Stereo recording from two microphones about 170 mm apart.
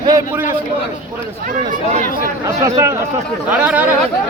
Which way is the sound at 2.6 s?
20° right (ahead or behind).